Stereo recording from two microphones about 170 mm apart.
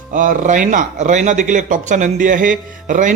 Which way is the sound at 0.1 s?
50° right (ahead or behind).